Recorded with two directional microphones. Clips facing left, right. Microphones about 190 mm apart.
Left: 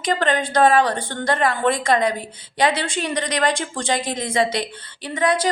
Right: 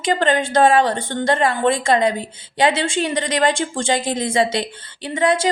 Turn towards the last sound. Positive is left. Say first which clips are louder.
# right 2 dB
turn(degrees=-25)  # may be behind; listen again after turning